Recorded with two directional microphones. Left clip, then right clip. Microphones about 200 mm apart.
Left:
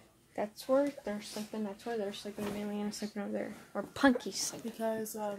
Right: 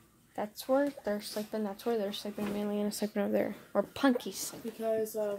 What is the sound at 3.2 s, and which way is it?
Speech, 45° right (ahead or behind).